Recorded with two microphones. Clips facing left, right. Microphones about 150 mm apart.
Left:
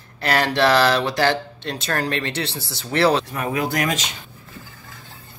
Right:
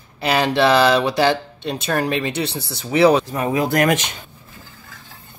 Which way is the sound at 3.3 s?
30° right (ahead or behind).